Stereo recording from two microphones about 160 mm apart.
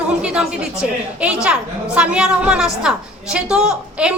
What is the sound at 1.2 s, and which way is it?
A woman's voice, 5° right (ahead or behind).